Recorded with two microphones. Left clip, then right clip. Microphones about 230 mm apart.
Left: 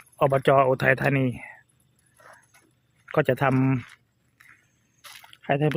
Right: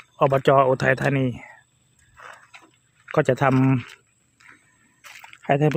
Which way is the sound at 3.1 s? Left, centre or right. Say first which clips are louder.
Right 3 dB; centre.